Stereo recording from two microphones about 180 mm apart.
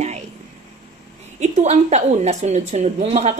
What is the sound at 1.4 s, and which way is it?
A woman's voice, 40° right (ahead or behind).